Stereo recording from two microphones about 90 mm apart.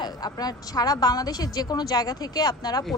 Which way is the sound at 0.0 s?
50° left (ahead or behind).